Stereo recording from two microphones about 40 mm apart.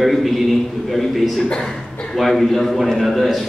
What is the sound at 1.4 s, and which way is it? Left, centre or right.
Speech, centre.